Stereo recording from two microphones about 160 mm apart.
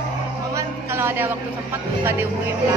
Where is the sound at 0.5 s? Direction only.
15° right (ahead or behind).